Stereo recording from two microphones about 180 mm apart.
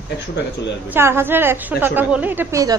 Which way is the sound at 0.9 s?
15° right (ahead or behind).